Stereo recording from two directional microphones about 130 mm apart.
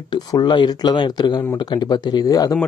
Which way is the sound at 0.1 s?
35° left (ahead or behind).